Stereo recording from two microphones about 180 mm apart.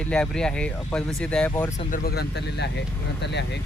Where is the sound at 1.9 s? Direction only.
55° left (ahead or behind); by 3.6 s 70° left (ahead or behind).